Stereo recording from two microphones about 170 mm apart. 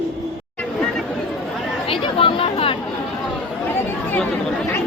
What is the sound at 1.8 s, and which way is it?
Speech, 30° left (ahead or behind).